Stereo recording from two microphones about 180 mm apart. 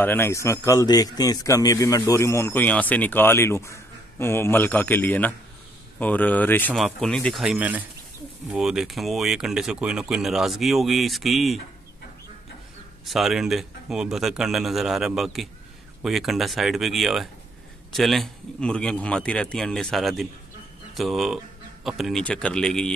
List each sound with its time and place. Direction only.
0.0 s a man's voice: 10° left (ahead or behind)
13.0 s speech: centre (ahead or behind)